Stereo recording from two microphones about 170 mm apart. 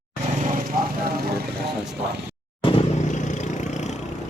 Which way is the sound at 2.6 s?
30° left (ahead or behind).